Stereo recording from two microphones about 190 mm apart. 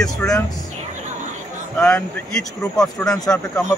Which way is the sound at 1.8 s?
5° left (ahead or behind).